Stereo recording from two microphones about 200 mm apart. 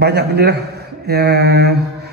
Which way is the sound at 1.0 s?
55° right (ahead or behind).